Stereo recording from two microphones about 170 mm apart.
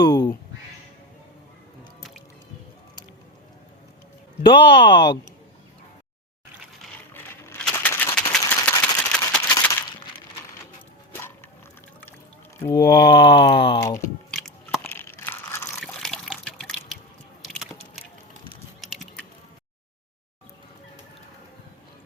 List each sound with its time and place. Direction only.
0.1 s quack: 25° left (ahead or behind)
2.0 s music: centre (ahead or behind)
4.4 s speech: 90° left
7.1 s a sound: 15° left (ahead or behind)
12.5 s mantra: 20° left (ahead or behind)
12.9 s a sound: 80° left
14.3 s biting: centre (ahead or behind)
14.8 s crunch: 15° left (ahead or behind)
15.8 s liquid: 5° left (ahead or behind)
17.5 s a sound: centre (ahead or behind)
18.8 s typing: centre (ahead or behind)